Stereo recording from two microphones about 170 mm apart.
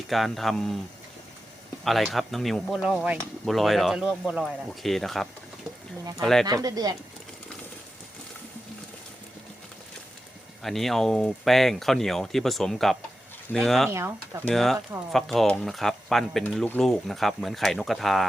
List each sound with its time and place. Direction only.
0.1 s speech: centre (ahead or behind)
1.8 s speech: centre (ahead or behind)
6.4 s speech: 20° right (ahead or behind)
10.6 s speech: centre (ahead or behind)